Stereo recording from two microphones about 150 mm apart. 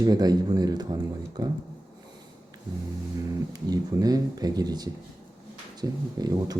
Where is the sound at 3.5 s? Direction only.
25° right (ahead or behind).